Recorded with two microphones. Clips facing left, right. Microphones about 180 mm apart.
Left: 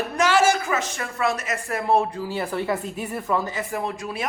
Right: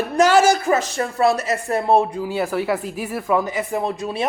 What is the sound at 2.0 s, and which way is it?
Speech, 15° right (ahead or behind).